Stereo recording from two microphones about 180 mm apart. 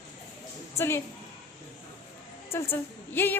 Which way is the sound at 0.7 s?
15° left (ahead or behind).